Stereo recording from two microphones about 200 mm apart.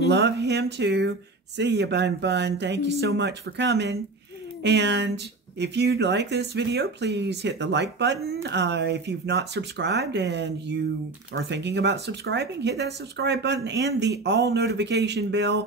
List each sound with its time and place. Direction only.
0.1 s speech: 60° right (ahead or behind)